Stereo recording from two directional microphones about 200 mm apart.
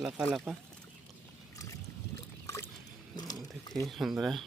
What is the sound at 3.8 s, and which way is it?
Speech, centre (ahead or behind).